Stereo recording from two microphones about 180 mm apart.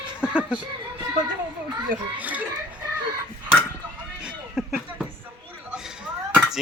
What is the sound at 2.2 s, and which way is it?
Speech, 10° right (ahead or behind).